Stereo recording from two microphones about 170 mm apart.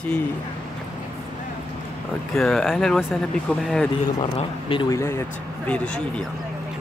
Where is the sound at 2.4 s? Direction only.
Centre (ahead or behind).